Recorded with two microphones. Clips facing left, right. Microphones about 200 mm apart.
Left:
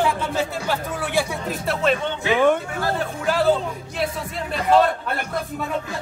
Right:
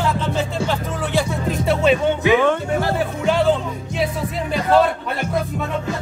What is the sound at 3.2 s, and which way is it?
Speech, 5° left (ahead or behind).